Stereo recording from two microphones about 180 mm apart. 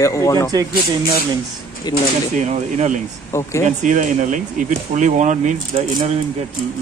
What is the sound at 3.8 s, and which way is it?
Speech, 45° right (ahead or behind).